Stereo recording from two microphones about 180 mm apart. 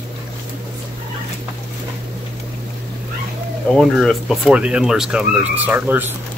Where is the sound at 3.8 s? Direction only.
Centre (ahead or behind).